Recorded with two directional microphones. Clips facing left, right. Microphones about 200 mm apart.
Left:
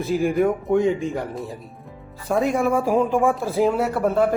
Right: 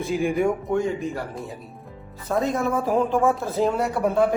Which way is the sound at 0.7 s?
20° left (ahead or behind).